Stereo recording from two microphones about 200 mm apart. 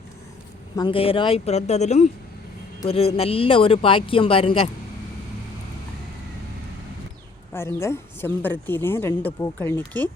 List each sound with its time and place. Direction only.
0.8 s speech: 25° left (ahead or behind)
7.5 s a woman's voice: 10° left (ahead or behind)